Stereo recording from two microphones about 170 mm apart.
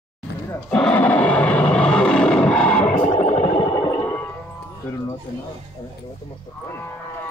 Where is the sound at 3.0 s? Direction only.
40° left (ahead or behind).